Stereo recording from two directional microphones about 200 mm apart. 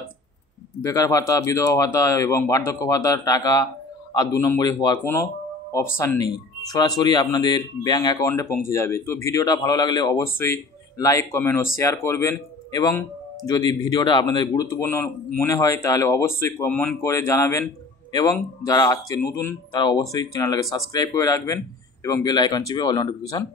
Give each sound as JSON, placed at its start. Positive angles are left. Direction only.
{"t": 0.8, "sound": "a man's voice", "side_deg": 15}